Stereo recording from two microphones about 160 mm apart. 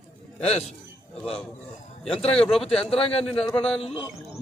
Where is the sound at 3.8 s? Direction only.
35° left (ahead or behind).